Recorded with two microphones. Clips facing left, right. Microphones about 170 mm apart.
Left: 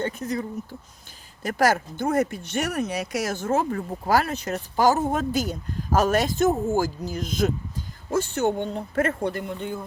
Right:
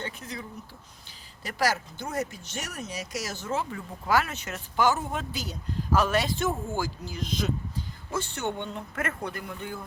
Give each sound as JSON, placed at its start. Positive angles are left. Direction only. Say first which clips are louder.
{"t": 0.0, "sound": "speech", "louder": "left 10 dB", "side_deg": 45}